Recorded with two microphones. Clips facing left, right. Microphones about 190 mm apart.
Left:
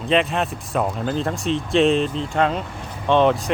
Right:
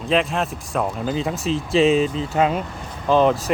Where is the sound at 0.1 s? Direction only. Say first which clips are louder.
Left 1 dB; centre (ahead or behind).